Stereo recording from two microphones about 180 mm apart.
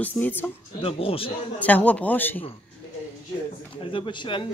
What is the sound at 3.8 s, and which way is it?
Speech, 25° left (ahead or behind).